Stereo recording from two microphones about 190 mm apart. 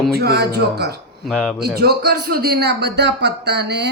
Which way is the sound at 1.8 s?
55° right (ahead or behind).